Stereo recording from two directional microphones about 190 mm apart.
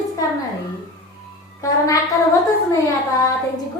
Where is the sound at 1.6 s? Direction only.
15° left (ahead or behind).